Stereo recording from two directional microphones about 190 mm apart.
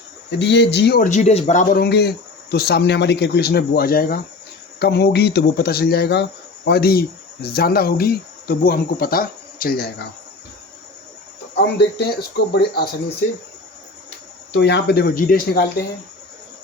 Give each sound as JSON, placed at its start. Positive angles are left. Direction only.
{"t": 0.3, "sound": "speech", "side_deg": 65}
{"t": 1.8, "sound": "speech", "side_deg": 60}
{"t": 11.5, "sound": "speech", "side_deg": 65}
{"t": 14.5, "sound": "speech", "side_deg": 65}